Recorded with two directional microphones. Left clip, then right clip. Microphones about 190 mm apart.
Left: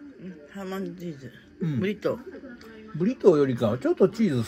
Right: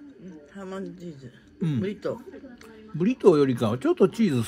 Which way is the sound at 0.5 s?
15° left (ahead or behind).